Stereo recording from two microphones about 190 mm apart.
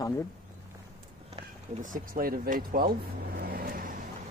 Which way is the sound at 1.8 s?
45° right (ahead or behind).